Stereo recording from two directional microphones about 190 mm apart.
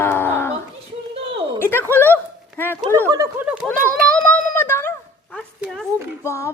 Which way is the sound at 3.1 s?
20° right (ahead or behind).